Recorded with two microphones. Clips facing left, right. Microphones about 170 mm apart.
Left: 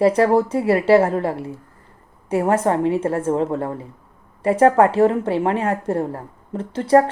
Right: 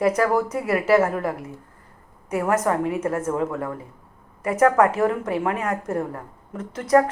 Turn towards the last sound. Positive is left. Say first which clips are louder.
# left 3 dB
turn(degrees=30)  # may be behind; listen again after turning